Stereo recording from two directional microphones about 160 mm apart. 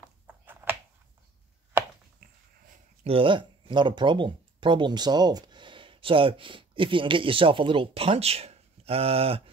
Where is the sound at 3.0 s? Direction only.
35° right (ahead or behind).